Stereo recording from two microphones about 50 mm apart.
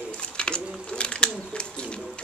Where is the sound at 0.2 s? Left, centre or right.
Centre.